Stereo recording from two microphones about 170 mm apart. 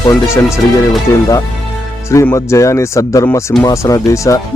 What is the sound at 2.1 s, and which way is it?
Speech, 15° left (ahead or behind).